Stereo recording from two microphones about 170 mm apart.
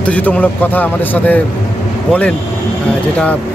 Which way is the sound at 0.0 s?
10° left (ahead or behind).